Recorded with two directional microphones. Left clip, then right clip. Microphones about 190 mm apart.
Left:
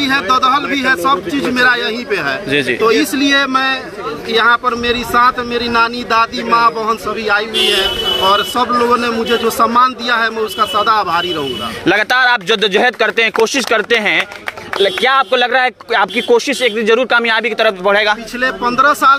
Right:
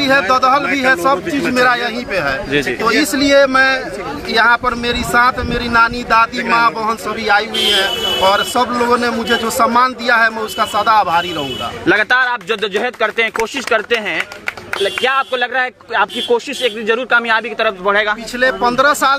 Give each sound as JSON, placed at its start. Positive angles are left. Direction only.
{"t": 0.0, "sound": "a man's voice", "side_deg": 0}
{"t": 11.8, "sound": "speech", "side_deg": 30}
{"t": 18.4, "sound": "a man's voice", "side_deg": -10}